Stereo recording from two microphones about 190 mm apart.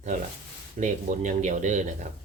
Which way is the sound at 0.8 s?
40° right (ahead or behind).